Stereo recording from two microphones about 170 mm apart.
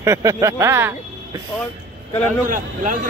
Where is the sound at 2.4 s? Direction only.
50° right (ahead or behind).